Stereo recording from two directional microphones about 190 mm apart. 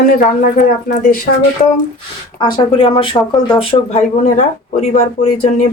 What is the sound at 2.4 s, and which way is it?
Speech, 25° left (ahead or behind).